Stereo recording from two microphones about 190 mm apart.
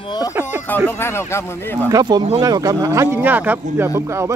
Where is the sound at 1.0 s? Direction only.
15° left (ahead or behind).